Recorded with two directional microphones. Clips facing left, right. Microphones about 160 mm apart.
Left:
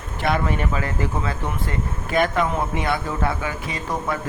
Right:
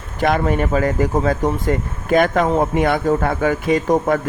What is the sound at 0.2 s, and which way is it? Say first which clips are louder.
Speech: right 5 dB; 45° right (ahead or behind).